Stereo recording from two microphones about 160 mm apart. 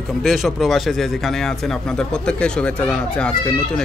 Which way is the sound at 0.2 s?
Centre (ahead or behind).